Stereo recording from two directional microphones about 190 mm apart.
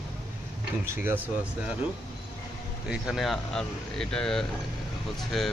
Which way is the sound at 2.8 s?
5° right (ahead or behind).